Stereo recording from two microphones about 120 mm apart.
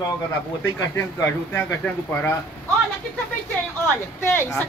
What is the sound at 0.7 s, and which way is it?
A man's voice, 25° left (ahead or behind).